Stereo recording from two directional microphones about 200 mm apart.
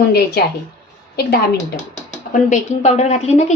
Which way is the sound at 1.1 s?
50° left (ahead or behind).